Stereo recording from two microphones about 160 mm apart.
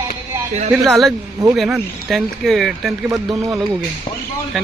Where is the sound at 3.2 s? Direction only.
25° right (ahead or behind).